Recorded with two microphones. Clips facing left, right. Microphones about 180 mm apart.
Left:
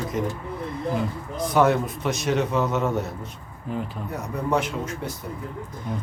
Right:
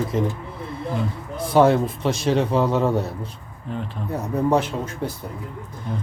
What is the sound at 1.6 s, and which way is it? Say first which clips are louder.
Speech: right 4 dB; 30° right (ahead or behind).